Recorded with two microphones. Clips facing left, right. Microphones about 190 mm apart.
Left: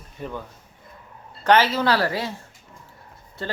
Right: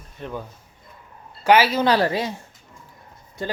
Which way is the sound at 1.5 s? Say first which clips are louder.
Right 2 dB; 10° right (ahead or behind).